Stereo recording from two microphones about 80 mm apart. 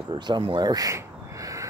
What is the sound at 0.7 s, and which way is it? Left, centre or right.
Speech, right.